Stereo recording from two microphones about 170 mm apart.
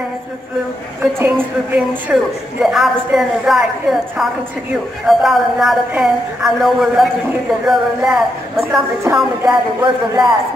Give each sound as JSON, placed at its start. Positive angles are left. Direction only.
{"t": 1.2, "sound": "a woman's voice", "side_deg": -10}
{"t": 9.4, "sound": "speech", "side_deg": -20}